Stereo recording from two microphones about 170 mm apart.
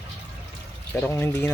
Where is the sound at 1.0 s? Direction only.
10° left (ahead or behind).